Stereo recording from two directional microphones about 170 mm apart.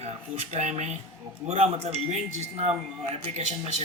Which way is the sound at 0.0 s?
40° right (ahead or behind).